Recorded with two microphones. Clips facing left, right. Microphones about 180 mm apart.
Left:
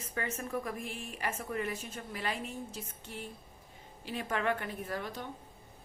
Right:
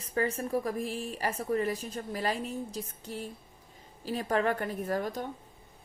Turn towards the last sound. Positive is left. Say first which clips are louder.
# right 7 dB
turn(degrees=-45)  # may be behind; listen again after turning